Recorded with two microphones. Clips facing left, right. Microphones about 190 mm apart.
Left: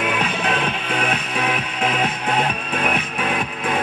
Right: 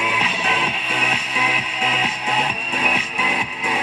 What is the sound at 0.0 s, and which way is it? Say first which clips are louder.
Music: left 3 dB; 55° left (ahead or behind).